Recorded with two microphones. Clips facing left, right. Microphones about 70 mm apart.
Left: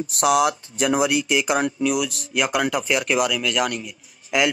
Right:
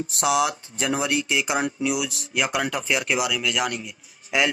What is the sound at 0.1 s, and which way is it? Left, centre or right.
Speech, centre.